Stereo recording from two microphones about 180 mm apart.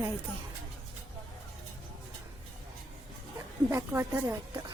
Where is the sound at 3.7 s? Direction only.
15° right (ahead or behind).